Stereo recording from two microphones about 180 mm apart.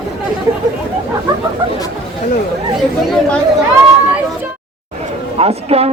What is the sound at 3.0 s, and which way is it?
Chatter, 5° left (ahead or behind).